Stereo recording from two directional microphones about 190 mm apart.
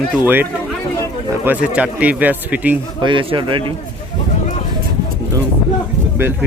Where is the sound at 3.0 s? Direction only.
25° right (ahead or behind).